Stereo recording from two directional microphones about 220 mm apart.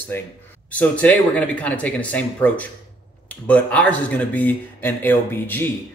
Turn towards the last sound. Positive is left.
turn(degrees=10)  # may be behind; listen again after turning